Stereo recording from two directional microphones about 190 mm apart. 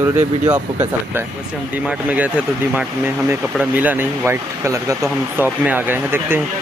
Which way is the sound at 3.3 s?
10° right (ahead or behind).